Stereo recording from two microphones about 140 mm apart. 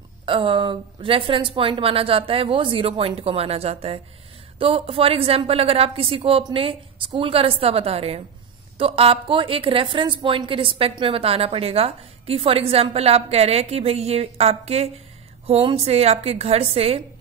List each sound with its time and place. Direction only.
0.2 s a woman's voice: 40° right (ahead or behind)